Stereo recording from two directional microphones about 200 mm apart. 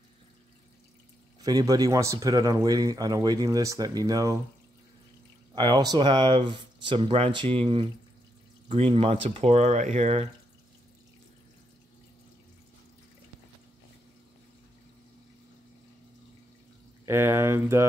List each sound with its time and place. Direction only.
1.4 s speech: 20° right (ahead or behind)
5.5 s speech: 20° right (ahead or behind)
17.0 s speech: 10° right (ahead or behind)